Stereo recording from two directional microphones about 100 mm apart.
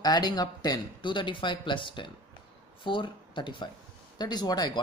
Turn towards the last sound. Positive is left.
turn(degrees=45)  # may be behind; listen again after turning